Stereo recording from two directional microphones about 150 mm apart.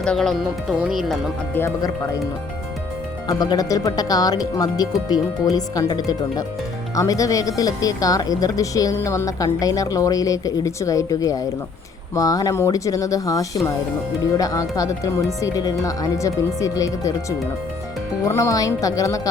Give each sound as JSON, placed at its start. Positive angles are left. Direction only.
{"t": 0.0, "sound": "speech", "side_deg": 5}
{"t": 1.5, "sound": "speech", "side_deg": 15}
{"t": 3.2, "sound": "speech", "side_deg": 25}